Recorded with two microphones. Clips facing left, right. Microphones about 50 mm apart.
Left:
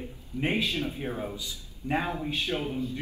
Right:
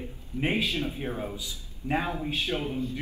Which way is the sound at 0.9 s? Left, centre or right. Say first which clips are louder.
Even; centre.